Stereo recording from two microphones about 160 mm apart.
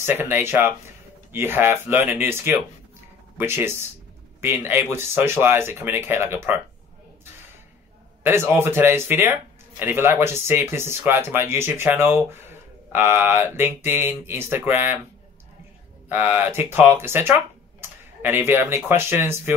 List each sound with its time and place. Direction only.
0.0 s speech: 15° right (ahead or behind)
8.2 s speech: 15° right (ahead or behind)
16.1 s speech: 10° right (ahead or behind)